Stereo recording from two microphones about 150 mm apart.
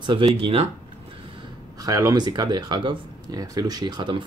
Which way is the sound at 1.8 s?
25° right (ahead or behind).